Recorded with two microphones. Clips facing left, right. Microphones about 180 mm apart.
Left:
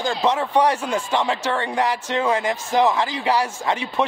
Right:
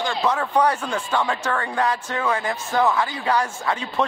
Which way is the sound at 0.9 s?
25° left (ahead or behind).